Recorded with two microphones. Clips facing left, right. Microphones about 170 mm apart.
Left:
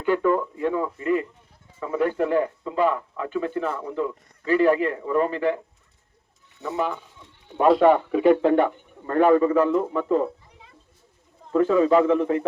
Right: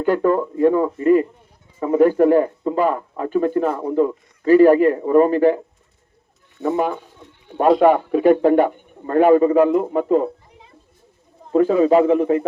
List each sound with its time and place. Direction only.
0.0 s speech: 40° right (ahead or behind)
6.6 s speech: 50° right (ahead or behind); by 10.2 s 35° right (ahead or behind)
11.5 s speech: 30° right (ahead or behind)